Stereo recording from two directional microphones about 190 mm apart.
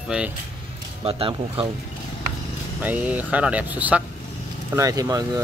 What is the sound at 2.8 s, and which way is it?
Speech, 5° right (ahead or behind).